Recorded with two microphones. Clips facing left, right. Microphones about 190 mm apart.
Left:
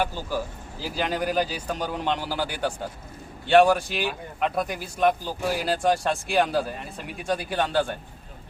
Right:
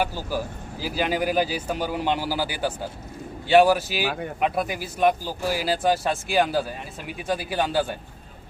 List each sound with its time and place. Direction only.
0.0 s speech: 5° right (ahead or behind)
4.0 s speech: 70° right (ahead or behind)
4.4 s speech: 5° right (ahead or behind)